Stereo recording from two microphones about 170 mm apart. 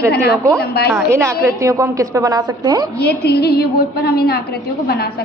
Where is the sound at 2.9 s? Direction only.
70° left (ahead or behind).